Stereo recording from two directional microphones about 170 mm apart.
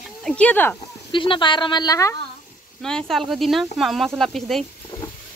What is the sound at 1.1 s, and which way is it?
Speech, 30° left (ahead or behind).